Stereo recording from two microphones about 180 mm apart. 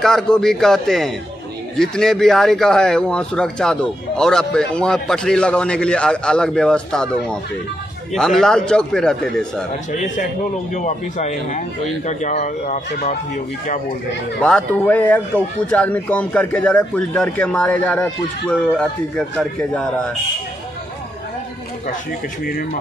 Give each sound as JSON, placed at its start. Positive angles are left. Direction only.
{"t": 0.0, "sound": "speech", "side_deg": 5}
{"t": 10.7, "sound": "speech", "side_deg": 40}
{"t": 14.4, "sound": "a man's voice", "side_deg": 5}